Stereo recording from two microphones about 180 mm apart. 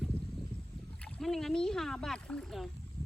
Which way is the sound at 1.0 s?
5° left (ahead or behind).